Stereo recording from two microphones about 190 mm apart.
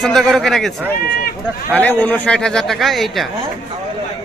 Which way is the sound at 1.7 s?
10° left (ahead or behind).